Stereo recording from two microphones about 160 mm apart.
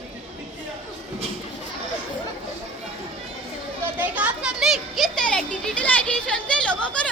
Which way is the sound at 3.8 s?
10° right (ahead or behind).